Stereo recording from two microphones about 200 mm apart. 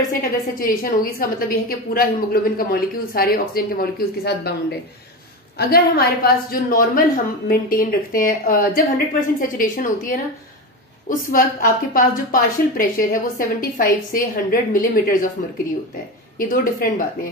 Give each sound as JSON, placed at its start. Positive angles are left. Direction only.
{"t": 0.1, "sound": "a woman's voice", "side_deg": 45}
{"t": 16.3, "sound": "a woman's voice", "side_deg": 45}